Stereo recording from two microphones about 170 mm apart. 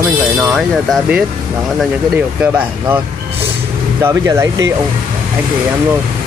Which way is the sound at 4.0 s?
15° right (ahead or behind).